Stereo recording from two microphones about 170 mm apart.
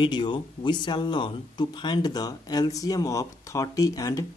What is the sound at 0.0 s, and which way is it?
Speech, 25° left (ahead or behind).